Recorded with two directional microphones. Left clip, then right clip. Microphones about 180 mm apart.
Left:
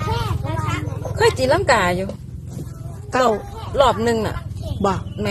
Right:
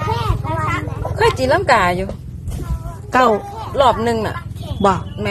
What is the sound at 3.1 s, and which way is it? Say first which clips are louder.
Speech: right 4 dB; 15° right (ahead or behind).